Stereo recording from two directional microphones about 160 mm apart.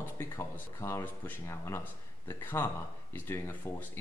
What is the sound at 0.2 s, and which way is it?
Speech, 15° left (ahead or behind).